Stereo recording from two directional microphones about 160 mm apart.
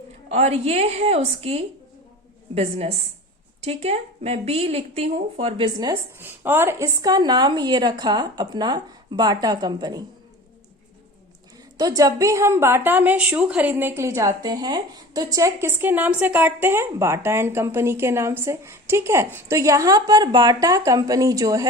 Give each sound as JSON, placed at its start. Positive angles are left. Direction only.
{"t": 0.3, "sound": "speech", "side_deg": -40}
{"t": 5.9, "sound": "speech", "side_deg": -15}
{"t": 11.8, "sound": "a woman's voice", "side_deg": -20}